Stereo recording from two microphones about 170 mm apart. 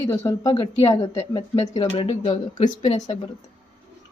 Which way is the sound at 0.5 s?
30° left (ahead or behind).